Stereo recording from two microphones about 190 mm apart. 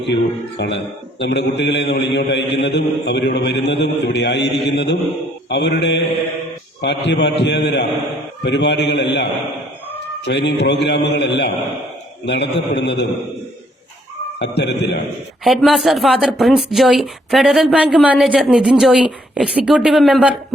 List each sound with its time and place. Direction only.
0.0 s a man's voice: 65° left (ahead or behind)
5.5 s mantra: 65° left (ahead or behind)
6.8 s a man's voice: 65° left (ahead or behind)
14.3 s a man's voice: 65° left (ahead or behind)
15.4 s a woman's voice: centre (ahead or behind)